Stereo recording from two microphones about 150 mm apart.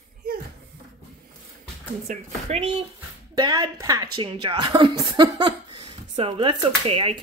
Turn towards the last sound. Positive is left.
turn(degrees=-35)  # may be behind; listen again after turning